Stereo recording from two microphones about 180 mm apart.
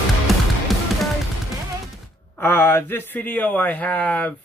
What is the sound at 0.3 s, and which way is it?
Music, centre (ahead or behind).